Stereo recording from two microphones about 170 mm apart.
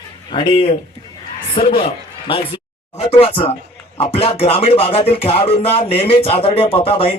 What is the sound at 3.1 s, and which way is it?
A man's voice, 35° left (ahead or behind).